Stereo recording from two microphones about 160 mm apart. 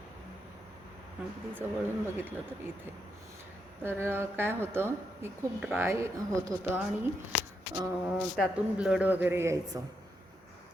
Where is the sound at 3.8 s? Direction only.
15° right (ahead or behind).